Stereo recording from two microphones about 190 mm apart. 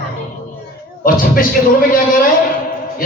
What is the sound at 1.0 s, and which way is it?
Speech, 50° left (ahead or behind).